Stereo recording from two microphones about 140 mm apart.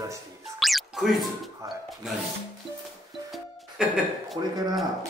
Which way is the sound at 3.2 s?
Centre (ahead or behind).